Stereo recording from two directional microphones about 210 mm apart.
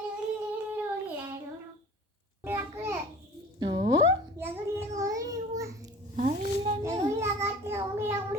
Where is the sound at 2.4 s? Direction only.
10° right (ahead or behind).